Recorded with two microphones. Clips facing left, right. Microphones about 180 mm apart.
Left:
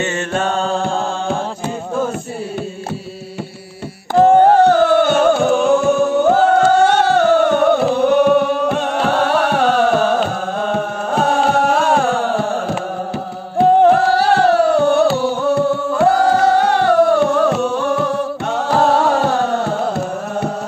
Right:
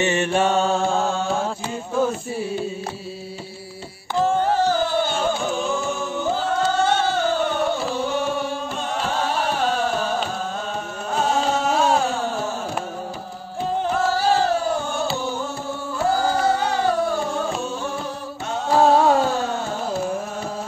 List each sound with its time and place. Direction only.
0.0 s mantra: 15° right (ahead or behind)
4.1 s music: 60° left (ahead or behind)
13.6 s music: 70° left (ahead or behind)